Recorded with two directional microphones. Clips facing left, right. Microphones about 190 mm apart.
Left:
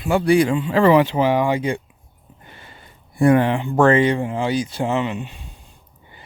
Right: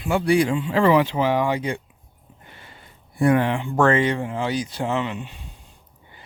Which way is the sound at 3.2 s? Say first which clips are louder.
Left 4 dB; 45° left (ahead or behind).